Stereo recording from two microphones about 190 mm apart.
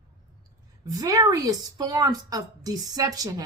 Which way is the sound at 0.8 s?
20° right (ahead or behind).